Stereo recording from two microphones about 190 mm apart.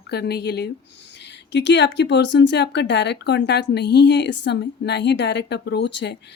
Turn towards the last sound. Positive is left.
turn(degrees=60)  # may be behind; listen again after turning